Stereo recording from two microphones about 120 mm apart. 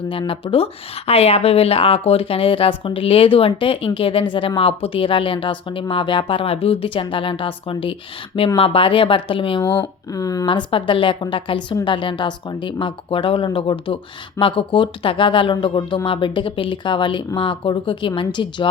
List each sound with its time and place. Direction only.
0.1 s speech: 45° left (ahead or behind)
9.6 s speech: 20° left (ahead or behind)
10.1 s speech: 30° left (ahead or behind)
10.7 s speech: 45° left (ahead or behind)